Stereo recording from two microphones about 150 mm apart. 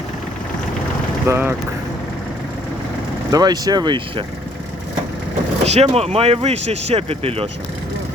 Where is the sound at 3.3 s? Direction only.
25° right (ahead or behind).